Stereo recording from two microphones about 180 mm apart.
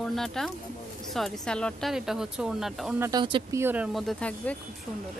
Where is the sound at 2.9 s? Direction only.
15° right (ahead or behind); by 4.5 s 5° left (ahead or behind).